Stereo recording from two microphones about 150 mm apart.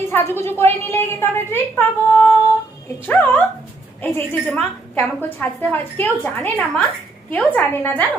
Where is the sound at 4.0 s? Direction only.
10° left (ahead or behind).